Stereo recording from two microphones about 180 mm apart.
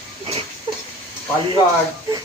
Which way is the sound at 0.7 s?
30° right (ahead or behind).